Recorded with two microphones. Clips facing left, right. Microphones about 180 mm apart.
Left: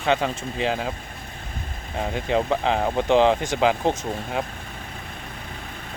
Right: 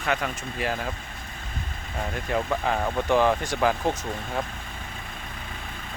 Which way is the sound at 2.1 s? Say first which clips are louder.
Left 4 dB; 20° left (ahead or behind).